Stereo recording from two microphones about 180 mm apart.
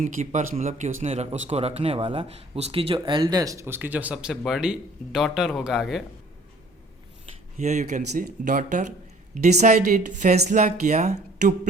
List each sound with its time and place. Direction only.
0.0 s a man's voice: 45° right (ahead or behind); by 6.0 s centre (ahead or behind)
7.6 s speech: 40° right (ahead or behind)